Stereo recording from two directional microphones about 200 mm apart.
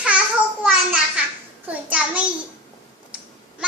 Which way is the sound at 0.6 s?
5° right (ahead or behind).